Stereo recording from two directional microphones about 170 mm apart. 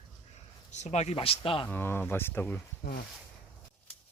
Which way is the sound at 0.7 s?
40° left (ahead or behind).